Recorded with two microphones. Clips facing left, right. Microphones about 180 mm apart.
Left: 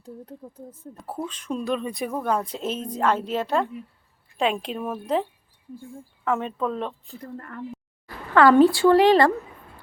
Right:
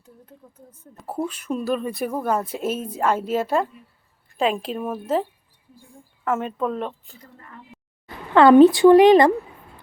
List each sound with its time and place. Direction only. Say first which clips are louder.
0.0 s speech: left 9 dB; 35° left (ahead or behind)
1.0 s speech: right 4 dB; 10° right (ahead or behind)
7.2 s speech: left 9 dB; 55° left (ahead or behind)
8.0 s speech: right 3 dB; 20° right (ahead or behind)